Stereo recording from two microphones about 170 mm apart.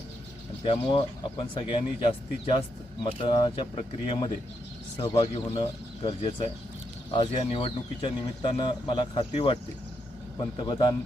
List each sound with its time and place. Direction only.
0.6 s speech: 30° left (ahead or behind)
10.6 s a man's voice: 25° left (ahead or behind)